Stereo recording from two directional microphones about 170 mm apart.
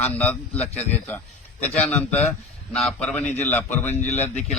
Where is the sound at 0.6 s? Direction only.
40° left (ahead or behind).